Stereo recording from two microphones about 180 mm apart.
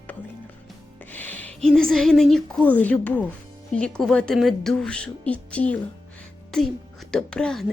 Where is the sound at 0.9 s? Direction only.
10° left (ahead or behind).